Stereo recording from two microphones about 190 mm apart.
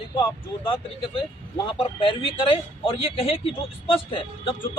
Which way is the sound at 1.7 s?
25° left (ahead or behind).